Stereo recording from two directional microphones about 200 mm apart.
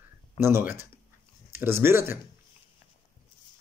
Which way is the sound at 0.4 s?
10° right (ahead or behind).